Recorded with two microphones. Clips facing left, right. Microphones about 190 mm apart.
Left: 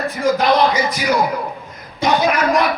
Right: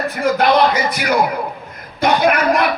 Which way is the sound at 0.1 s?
60° right (ahead or behind).